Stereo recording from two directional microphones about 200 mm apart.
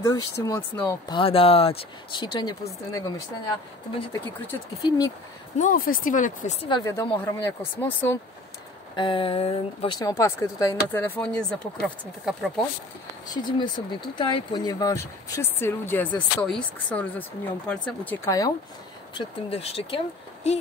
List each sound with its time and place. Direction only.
0.0 s speech: 15° left (ahead or behind)
4.1 s speech: 15° left (ahead or behind)
5.6 s speech: 45° left (ahead or behind)
6.7 s speech: 15° left (ahead or behind)
8.9 s speech: 25° left (ahead or behind); by 12.6 s centre (ahead or behind)
13.3 s speech: 20° left (ahead or behind)
19.1 s speech: 30° left (ahead or behind)